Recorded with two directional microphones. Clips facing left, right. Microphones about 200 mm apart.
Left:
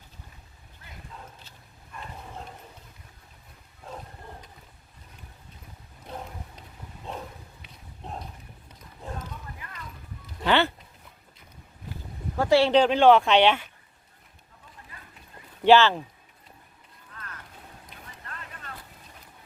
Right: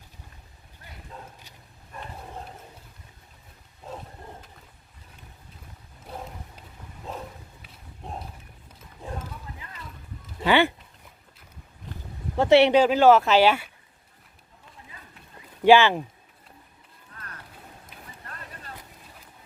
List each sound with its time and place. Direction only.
6.1 s a sound: 5° right (ahead or behind)
10.4 s speech: 10° right (ahead or behind)
12.4 s speech: 20° right (ahead or behind)
12.7 s speech: 5° right (ahead or behind)
15.6 s speech: 15° right (ahead or behind)
17.2 s a sound: 30° right (ahead or behind)